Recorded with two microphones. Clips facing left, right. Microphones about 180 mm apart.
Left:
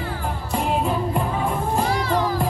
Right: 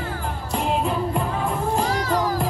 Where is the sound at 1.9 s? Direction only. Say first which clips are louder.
Left 1 dB; 45° right (ahead or behind).